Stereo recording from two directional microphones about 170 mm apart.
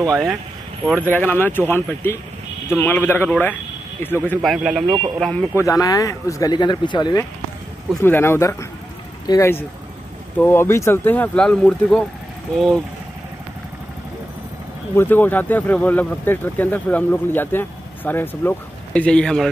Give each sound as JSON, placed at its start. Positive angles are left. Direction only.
{"t": 0.8, "sound": "speech", "side_deg": 10}
{"t": 4.4, "sound": "speech", "side_deg": 0}
{"t": 5.6, "sound": "speech", "side_deg": 20}
{"t": 8.0, "sound": "speech", "side_deg": 15}
{"t": 15.0, "sound": "speech", "side_deg": 10}